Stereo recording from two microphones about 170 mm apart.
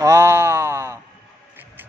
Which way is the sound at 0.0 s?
15° right (ahead or behind).